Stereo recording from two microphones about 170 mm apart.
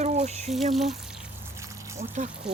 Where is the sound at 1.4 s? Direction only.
15° right (ahead or behind).